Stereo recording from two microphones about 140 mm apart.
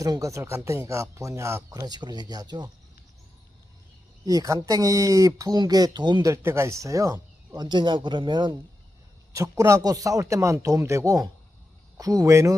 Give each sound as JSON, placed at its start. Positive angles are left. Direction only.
{"t": 0.0, "sound": "speech", "side_deg": -25}
{"t": 4.3, "sound": "speech", "side_deg": -25}
{"t": 6.3, "sound": "speech", "side_deg": -20}
{"t": 9.3, "sound": "speech", "side_deg": -25}